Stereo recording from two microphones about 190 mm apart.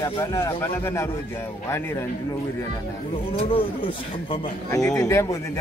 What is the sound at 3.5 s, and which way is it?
Speech, 30° left (ahead or behind).